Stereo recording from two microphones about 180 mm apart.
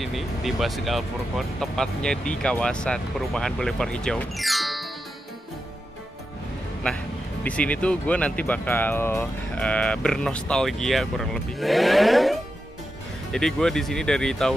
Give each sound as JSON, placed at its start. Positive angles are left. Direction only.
{"t": 0.0, "sound": "speech", "side_deg": 0}
{"t": 7.4, "sound": "speech", "side_deg": 5}